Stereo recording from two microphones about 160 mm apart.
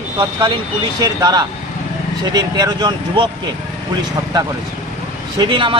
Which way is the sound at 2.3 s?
25° right (ahead or behind).